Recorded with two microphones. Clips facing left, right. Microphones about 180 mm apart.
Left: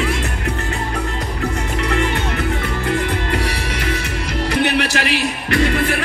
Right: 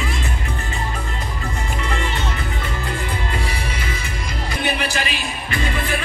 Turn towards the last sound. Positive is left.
turn(degrees=65)  # may be behind; listen again after turning